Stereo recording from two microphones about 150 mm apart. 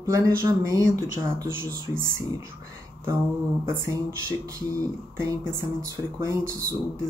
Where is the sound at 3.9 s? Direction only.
20° right (ahead or behind).